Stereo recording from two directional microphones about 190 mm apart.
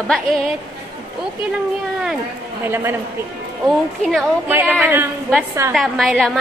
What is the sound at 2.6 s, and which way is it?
Speech, 10° right (ahead or behind).